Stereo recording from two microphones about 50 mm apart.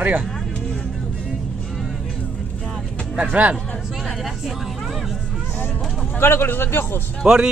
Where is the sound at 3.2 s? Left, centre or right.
Right.